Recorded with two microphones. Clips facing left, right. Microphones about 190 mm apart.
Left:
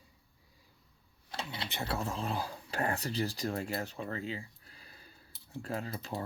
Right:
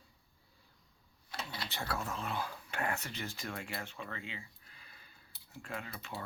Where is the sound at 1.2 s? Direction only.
30° left (ahead or behind).